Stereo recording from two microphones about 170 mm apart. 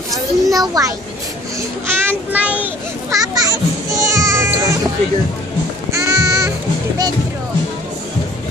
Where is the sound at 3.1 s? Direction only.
20° right (ahead or behind).